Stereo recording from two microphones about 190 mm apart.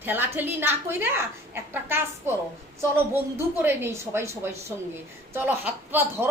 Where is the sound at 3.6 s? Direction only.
10° right (ahead or behind).